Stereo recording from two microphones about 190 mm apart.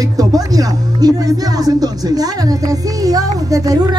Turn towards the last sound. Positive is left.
turn(degrees=-20)  # may be behind; listen again after turning